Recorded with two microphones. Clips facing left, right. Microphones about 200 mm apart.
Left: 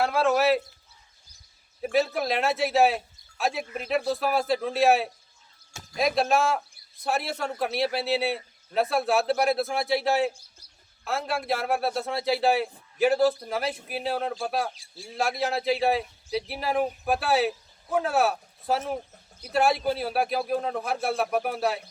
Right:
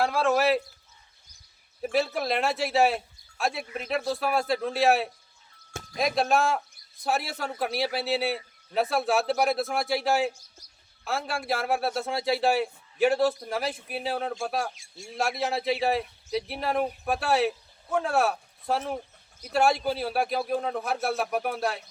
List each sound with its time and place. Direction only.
0.0 s a man's voice: centre (ahead or behind)
1.8 s a man's voice: centre (ahead or behind)